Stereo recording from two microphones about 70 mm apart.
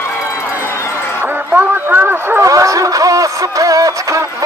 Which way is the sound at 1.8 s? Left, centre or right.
Right.